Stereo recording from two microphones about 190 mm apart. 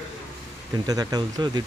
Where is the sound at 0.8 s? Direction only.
20° right (ahead or behind).